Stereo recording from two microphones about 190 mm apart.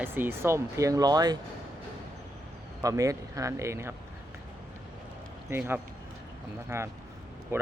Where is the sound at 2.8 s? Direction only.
20° right (ahead or behind).